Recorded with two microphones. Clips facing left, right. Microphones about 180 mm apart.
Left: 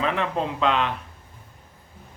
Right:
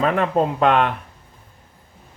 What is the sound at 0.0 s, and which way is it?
Speech, 50° right (ahead or behind).